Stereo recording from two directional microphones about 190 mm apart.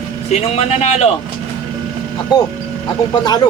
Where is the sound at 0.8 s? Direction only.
35° left (ahead or behind).